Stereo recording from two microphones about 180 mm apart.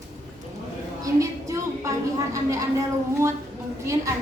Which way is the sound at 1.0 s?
15° right (ahead or behind).